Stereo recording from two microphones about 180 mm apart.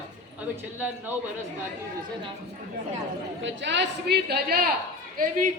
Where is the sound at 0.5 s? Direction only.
10° right (ahead or behind).